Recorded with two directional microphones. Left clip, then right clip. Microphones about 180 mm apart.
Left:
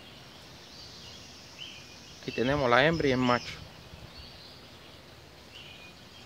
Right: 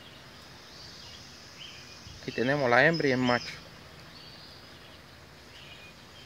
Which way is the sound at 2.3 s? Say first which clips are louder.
Even; centre (ahead or behind).